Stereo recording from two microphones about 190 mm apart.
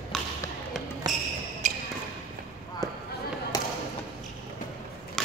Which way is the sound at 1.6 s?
40° right (ahead or behind).